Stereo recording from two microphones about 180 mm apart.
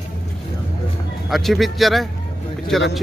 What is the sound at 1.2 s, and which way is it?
Speech, centre (ahead or behind).